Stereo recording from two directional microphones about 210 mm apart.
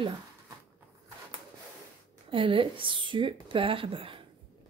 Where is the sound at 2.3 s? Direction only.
25° right (ahead or behind).